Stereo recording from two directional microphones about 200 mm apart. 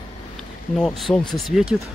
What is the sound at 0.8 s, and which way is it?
Speech, centre (ahead or behind).